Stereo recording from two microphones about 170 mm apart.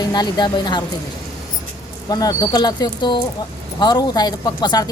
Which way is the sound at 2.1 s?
25° left (ahead or behind).